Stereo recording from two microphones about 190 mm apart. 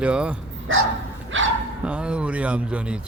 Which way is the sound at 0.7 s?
90° right.